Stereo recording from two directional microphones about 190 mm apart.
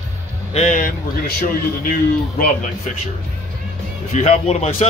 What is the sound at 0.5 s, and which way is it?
Speech, 40° left (ahead or behind).